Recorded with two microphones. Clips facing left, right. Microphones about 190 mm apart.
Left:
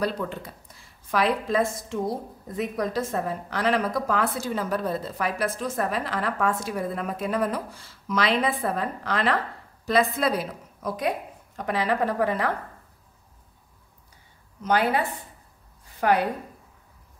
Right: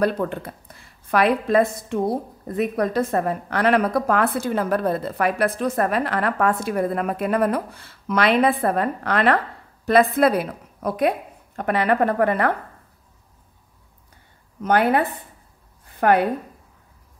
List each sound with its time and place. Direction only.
0.0 s a woman's voice: 55° right (ahead or behind)
14.6 s a woman's voice: 55° right (ahead or behind)